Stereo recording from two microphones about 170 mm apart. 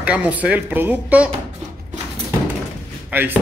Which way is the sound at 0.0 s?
5° right (ahead or behind).